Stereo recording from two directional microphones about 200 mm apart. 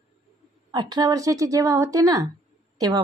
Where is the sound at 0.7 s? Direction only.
20° right (ahead or behind).